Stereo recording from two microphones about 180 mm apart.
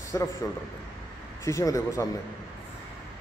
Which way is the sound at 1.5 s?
15° left (ahead or behind).